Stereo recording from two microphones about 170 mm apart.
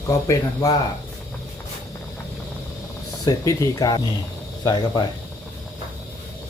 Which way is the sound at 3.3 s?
20° left (ahead or behind).